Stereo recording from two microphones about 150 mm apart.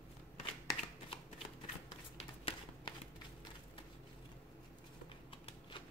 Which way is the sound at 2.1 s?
35° left (ahead or behind).